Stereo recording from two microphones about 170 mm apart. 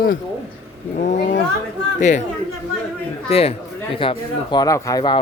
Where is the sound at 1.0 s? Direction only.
45° left (ahead or behind).